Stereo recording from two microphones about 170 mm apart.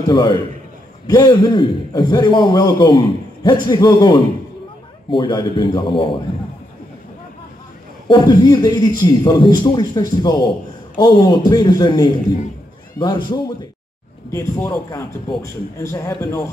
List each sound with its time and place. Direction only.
0.1 s a man's voice: 25° left (ahead or behind)
8.1 s a man's voice: 25° left (ahead or behind)